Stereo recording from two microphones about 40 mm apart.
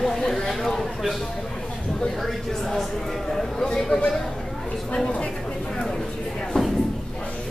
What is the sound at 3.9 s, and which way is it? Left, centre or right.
Chatter, left.